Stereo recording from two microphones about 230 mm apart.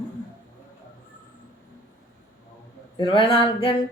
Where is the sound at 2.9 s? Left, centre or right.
Left.